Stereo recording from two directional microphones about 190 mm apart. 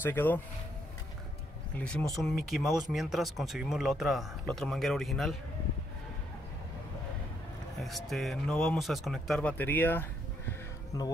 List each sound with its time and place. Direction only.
0.0 s speech: 10° left (ahead or behind)
1.8 s speech: 5° left (ahead or behind)
7.8 s speech: centre (ahead or behind); by 11.1 s 20° left (ahead or behind)